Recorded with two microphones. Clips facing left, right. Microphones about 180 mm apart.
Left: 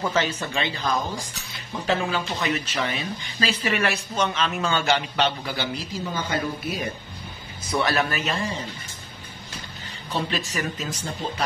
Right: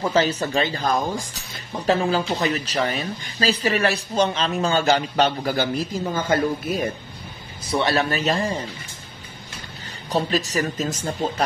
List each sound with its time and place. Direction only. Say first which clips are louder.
0.1 s speech: right 5 dB; 35° right (ahead or behind)
7.7 s speech: right 2 dB; 30° right (ahead or behind)
10.1 s speech: right 5 dB; 40° right (ahead or behind)